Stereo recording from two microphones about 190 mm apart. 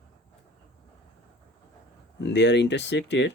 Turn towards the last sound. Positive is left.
turn(degrees=70)  # may be behind; listen again after turning